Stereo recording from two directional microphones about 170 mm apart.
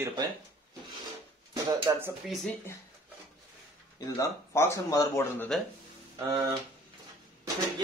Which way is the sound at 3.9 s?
20° left (ahead or behind).